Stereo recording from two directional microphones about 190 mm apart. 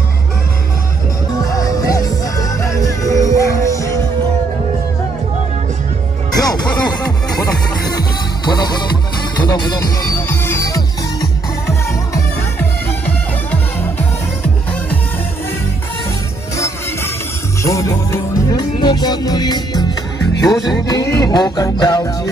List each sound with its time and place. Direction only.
1.4 s music: 20° left (ahead or behind)
6.3 s music: 20° left (ahead or behind)
16.5 s music: 15° left (ahead or behind)